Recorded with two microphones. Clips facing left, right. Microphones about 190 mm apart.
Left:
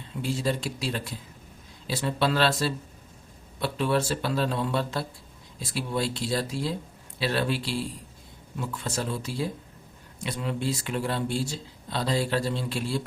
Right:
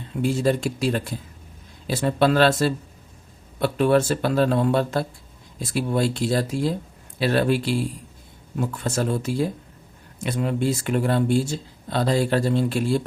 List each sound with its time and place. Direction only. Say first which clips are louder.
0.2 s speech: right 7 dB; 50° right (ahead or behind)